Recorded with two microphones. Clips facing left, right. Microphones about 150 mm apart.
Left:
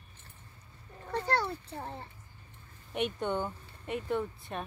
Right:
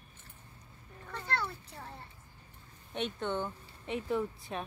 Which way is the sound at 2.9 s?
10° left (ahead or behind).